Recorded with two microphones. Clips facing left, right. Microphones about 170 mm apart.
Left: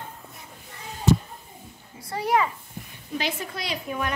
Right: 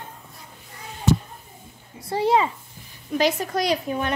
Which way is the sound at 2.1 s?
25° right (ahead or behind).